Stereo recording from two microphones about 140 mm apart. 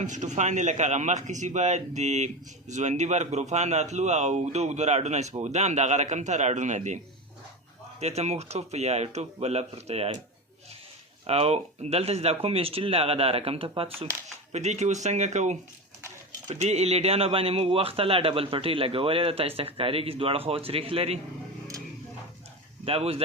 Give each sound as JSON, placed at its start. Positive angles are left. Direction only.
{"t": 0.0, "sound": "a man's voice", "side_deg": -60}
{"t": 11.3, "sound": "a man's voice", "side_deg": -45}
{"t": 14.5, "sound": "a man's voice", "side_deg": -55}
{"t": 22.9, "sound": "a man's voice", "side_deg": -45}